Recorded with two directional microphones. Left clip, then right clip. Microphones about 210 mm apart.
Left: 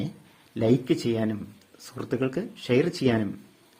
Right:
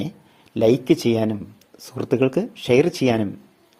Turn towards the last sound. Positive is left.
turn(degrees=-20)  # may be behind; listen again after turning